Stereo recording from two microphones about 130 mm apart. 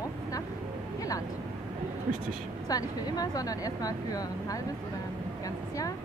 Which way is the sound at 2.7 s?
30° left (ahead or behind).